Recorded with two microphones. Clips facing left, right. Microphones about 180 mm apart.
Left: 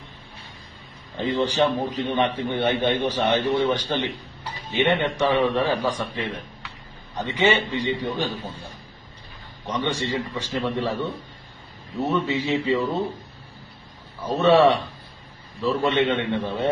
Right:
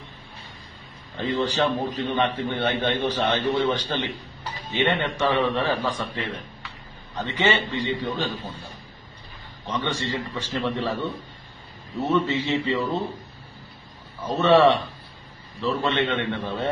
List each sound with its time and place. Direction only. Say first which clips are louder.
1.1 s a man's voice: left 2 dB; 20° left (ahead or behind)
9.7 s a man's voice: left 2 dB; 15° left (ahead or behind)
12.1 s a man's voice: right 1 dB; 10° left (ahead or behind)
14.2 s a man's voice: left 1 dB; 10° left (ahead or behind)